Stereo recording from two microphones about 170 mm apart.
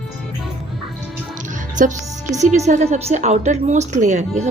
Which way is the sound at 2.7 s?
45° right (ahead or behind).